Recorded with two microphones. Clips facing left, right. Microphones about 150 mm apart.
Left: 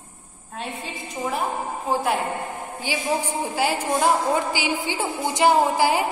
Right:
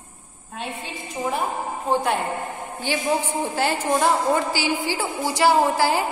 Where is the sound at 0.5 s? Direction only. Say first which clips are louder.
Even; centre (ahead or behind).